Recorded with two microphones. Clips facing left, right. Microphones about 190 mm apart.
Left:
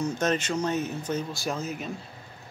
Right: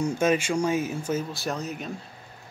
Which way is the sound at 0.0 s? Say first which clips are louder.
Right 3 dB; 10° right (ahead or behind).